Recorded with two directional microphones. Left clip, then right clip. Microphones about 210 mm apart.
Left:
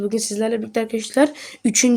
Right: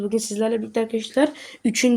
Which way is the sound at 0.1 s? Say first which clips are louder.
Left 1 dB; 25° left (ahead or behind).